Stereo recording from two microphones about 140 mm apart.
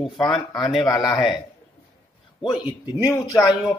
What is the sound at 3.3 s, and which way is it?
Speech, centre (ahead or behind).